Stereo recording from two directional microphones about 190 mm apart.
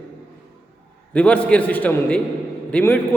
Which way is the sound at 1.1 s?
5° left (ahead or behind).